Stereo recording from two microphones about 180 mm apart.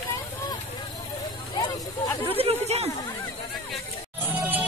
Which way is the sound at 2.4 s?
35° right (ahead or behind).